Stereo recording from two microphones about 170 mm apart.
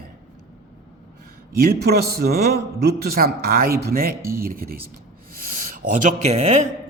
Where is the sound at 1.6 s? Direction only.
65° right (ahead or behind).